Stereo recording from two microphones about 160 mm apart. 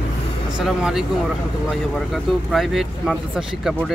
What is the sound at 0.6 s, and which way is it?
Speech, 5° right (ahead or behind).